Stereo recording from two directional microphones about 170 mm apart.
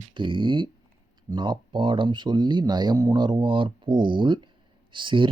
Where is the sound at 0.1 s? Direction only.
30° right (ahead or behind).